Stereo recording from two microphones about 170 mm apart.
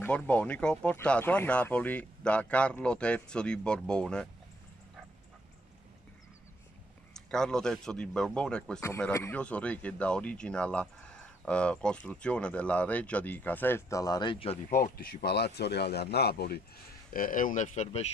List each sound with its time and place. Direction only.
0.0 s speech: 10° left (ahead or behind)
7.2 s a man's voice: 5° left (ahead or behind); by 14.6 s 30° left (ahead or behind)
15.2 s speech: 75° left (ahead or behind)
17.1 s speech: 55° left (ahead or behind)